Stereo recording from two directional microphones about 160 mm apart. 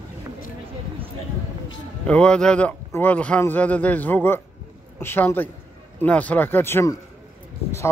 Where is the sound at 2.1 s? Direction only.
5° left (ahead or behind).